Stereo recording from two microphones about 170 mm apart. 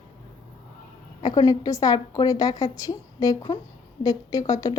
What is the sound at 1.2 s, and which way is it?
Speech, 20° left (ahead or behind).